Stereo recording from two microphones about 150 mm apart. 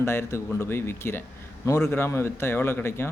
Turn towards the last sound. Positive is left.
turn(degrees=15)  # may be behind; listen again after turning